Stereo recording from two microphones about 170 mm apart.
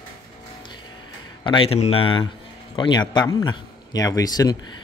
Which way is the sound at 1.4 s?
30° left (ahead or behind).